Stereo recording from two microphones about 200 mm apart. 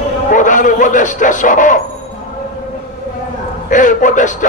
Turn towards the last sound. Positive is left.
turn(degrees=40)  # may be behind; listen again after turning